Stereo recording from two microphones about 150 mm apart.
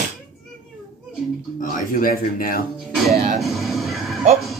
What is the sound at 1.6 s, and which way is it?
Speech, 70° left (ahead or behind).